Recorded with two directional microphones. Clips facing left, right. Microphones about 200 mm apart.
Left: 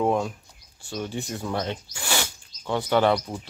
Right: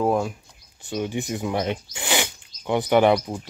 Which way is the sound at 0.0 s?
5° right (ahead or behind).